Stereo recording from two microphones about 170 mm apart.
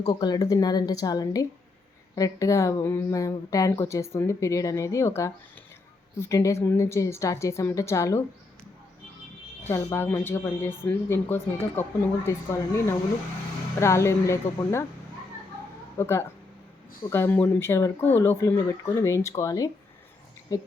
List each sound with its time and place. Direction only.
0.1 s speech: 25° left (ahead or behind)
9.6 s speech: 15° left (ahead or behind)
13.7 s speech: 15° left (ahead or behind)
16.0 s speech: 15° left (ahead or behind)